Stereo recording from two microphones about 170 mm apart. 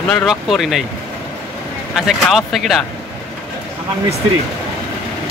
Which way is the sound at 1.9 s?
Centre (ahead or behind).